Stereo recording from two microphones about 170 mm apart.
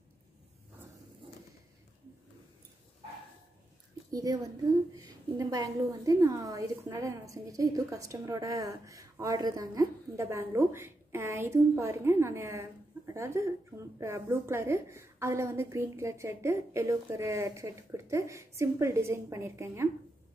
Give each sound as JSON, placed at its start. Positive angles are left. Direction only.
{"t": 4.1, "sound": "a woman's voice", "side_deg": -20}